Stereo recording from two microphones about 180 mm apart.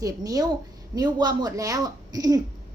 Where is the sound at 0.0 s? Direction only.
20° right (ahead or behind).